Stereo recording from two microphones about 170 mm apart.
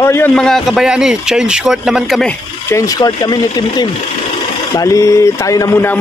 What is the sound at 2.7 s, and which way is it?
Speech, 20° left (ahead or behind).